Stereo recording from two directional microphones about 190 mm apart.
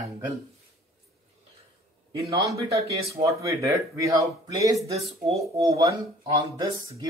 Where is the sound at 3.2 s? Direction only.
15° right (ahead or behind).